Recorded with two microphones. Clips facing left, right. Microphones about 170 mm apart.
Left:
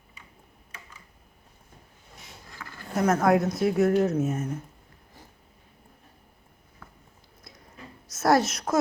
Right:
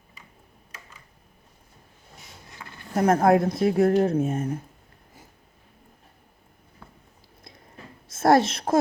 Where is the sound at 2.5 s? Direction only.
20° right (ahead or behind).